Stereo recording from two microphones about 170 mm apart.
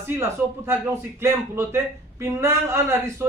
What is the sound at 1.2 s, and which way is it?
A man's voice, 15° right (ahead or behind).